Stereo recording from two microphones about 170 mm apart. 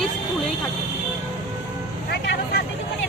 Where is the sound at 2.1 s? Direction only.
70° left (ahead or behind).